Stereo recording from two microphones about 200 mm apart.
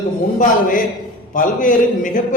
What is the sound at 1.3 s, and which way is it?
Speech, 40° left (ahead or behind).